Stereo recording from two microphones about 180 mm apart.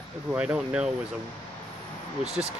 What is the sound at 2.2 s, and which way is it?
Speech, 35° right (ahead or behind).